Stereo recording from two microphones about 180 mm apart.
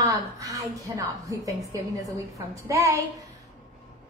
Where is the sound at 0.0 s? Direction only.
20° right (ahead or behind).